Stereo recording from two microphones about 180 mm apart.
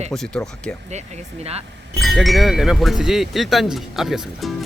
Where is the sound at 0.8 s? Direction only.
40° right (ahead or behind).